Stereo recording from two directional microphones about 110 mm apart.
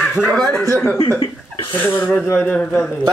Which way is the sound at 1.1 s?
50° left (ahead or behind).